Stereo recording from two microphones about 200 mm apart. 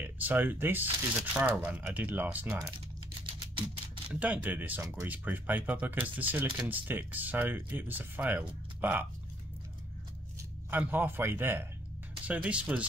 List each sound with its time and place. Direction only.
0.0 s speech: 10° right (ahead or behind)
3.5 s typewriter: 25° right (ahead or behind)
4.1 s speech: 5° right (ahead or behind)
10.7 s speech: 10° right (ahead or behind)